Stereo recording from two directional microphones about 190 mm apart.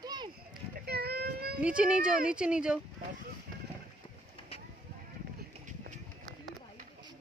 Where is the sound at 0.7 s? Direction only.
55° right (ahead or behind).